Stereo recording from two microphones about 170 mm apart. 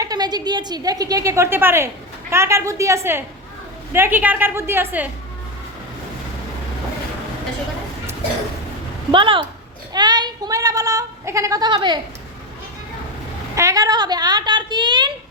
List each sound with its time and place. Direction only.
0.0 s a woman's voice: 25° right (ahead or behind)
9.1 s a woman's voice: 30° right (ahead or behind)
9.9 s a sound: 25° right (ahead or behind)
13.6 s a woman's voice: 20° right (ahead or behind)